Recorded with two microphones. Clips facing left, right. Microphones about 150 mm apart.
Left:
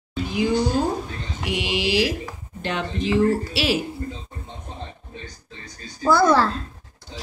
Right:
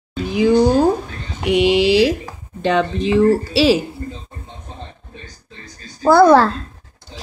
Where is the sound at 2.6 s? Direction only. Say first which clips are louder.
Right 9 dB; 80° right.